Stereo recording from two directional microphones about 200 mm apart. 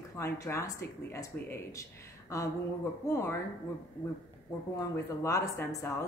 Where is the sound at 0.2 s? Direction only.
15° left (ahead or behind).